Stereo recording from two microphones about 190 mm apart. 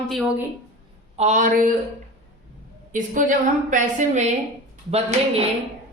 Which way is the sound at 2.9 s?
40° right (ahead or behind).